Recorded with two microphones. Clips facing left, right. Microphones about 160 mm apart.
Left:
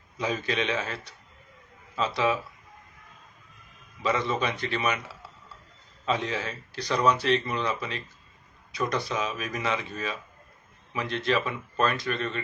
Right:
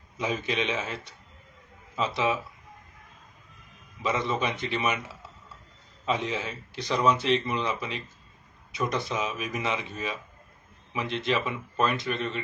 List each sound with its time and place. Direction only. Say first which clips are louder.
0.2 s speech: even; 20° right (ahead or behind)
4.0 s speech: left 1 dB; 15° right (ahead or behind)
10.9 s speech: left 1 dB; 20° right (ahead or behind)